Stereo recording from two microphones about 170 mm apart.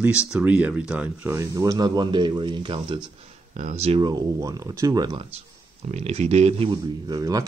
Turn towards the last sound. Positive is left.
turn(degrees=-20)  # may be behind; listen again after turning